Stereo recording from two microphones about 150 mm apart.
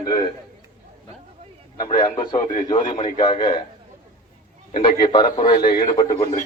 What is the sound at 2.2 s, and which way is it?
A man's voice, 30° left (ahead or behind).